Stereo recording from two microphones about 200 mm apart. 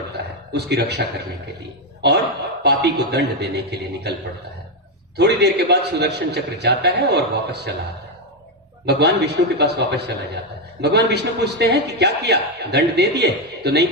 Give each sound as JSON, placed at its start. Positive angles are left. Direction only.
{"t": 0.5, "sound": "a man's voice", "side_deg": -55}
{"t": 5.1, "sound": "a man's voice", "side_deg": -55}
{"t": 8.8, "sound": "a man's voice", "side_deg": -55}